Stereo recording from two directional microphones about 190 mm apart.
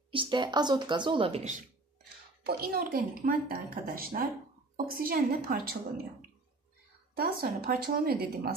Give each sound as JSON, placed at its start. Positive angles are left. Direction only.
{"t": 0.1, "sound": "speech", "side_deg": -25}
{"t": 2.4, "sound": "a woman's voice", "side_deg": -55}
{"t": 7.2, "sound": "a woman's voice", "side_deg": -50}